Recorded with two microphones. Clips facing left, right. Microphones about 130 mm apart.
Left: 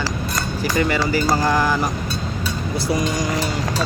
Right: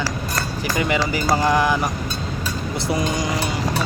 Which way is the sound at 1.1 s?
15° right (ahead or behind).